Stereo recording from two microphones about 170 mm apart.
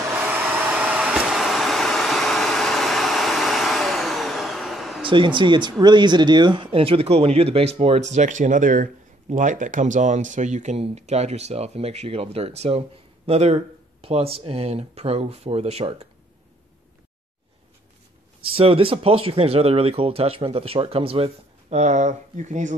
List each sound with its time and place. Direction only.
0.1 s vacuum cleaner: 10° right (ahead or behind)
5.0 s speech: 30° right (ahead or behind)
18.4 s speech: 35° right (ahead or behind)